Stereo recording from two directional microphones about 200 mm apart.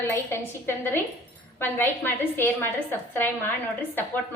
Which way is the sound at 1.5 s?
10° left (ahead or behind).